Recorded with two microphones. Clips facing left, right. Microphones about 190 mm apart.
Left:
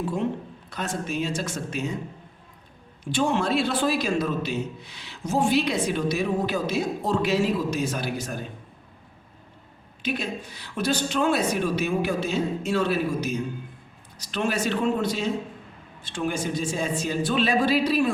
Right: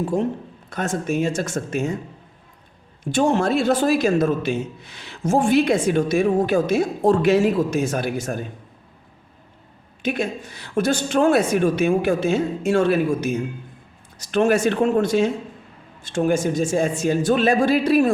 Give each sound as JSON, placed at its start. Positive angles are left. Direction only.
{"t": 0.0, "sound": "a man's voice", "side_deg": -45}
{"t": 3.0, "sound": "a man's voice", "side_deg": -45}
{"t": 10.0, "sound": "a man's voice", "side_deg": -50}